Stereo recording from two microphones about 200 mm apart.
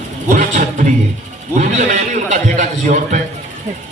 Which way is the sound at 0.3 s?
40° right (ahead or behind).